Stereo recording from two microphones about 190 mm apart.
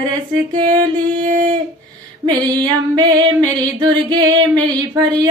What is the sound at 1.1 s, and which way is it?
Speech, 45° right (ahead or behind).